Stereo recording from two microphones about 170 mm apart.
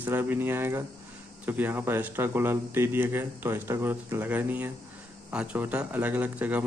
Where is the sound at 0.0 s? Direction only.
10° right (ahead or behind).